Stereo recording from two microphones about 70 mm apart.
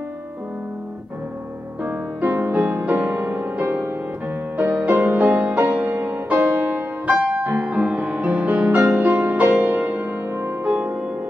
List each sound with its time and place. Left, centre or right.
1.9 s music: right
4.6 s music: right